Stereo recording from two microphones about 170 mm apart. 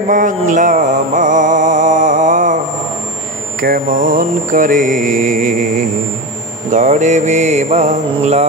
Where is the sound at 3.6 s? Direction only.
55° right (ahead or behind).